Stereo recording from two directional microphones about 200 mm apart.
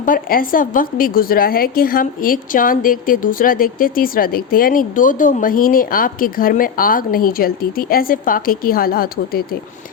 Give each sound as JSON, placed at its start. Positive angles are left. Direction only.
{"t": 0.0, "sound": "a woman's voice", "side_deg": 45}